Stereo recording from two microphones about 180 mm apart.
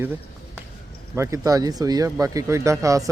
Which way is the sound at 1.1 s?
15° right (ahead or behind).